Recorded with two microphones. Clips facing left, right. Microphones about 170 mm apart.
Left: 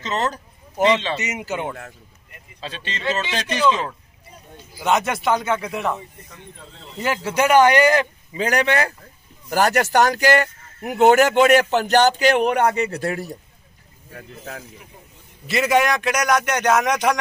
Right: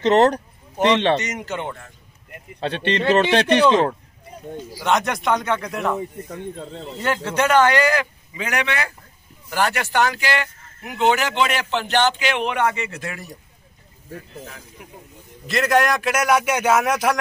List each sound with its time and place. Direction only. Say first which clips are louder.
0.0 s a man's voice: right 9 dB; 65° right (ahead or behind)
0.7 s speech: right 2 dB; 10° left (ahead or behind)
2.6 s a man's voice: right 7 dB; 65° right (ahead or behind)
4.8 s a man's voice: left 1 dB; 5° left (ahead or behind)
7.0 s speech: left 1 dB; 5° left (ahead or behind)
8.4 s a man's voice: left 5 dB; 35° left (ahead or behind)
15.4 s a man's voice: even; centre (ahead or behind)